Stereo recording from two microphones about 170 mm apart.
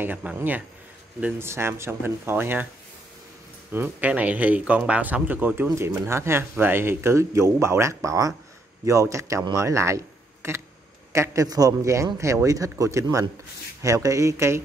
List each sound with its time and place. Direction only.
0.0 s speech: 10° right (ahead or behind)
3.7 s speech: 10° right (ahead or behind)